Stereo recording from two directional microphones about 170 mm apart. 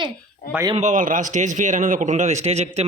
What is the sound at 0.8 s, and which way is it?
A man's voice, 45° right (ahead or behind).